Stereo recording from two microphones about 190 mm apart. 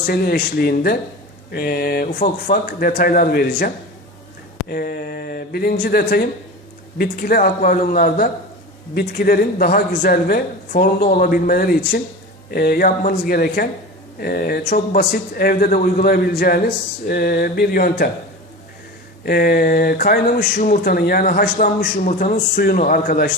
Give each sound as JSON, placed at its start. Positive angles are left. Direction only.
{"t": 0.1, "sound": "speech", "side_deg": 50}
{"t": 4.7, "sound": "speech", "side_deg": 50}
{"t": 19.2, "sound": "speech", "side_deg": 55}